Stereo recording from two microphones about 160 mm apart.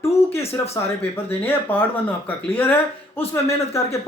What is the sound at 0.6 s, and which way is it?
Speech, 20° left (ahead or behind).